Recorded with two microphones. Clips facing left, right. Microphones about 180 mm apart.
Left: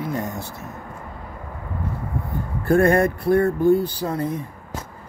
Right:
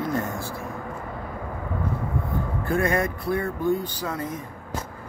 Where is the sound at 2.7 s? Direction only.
45° left (ahead or behind).